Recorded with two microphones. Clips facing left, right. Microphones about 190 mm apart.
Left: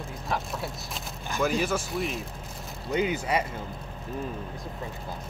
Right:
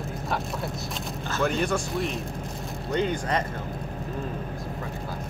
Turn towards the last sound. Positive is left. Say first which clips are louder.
# right 1 dB
turn(degrees=10)  # may be behind; listen again after turning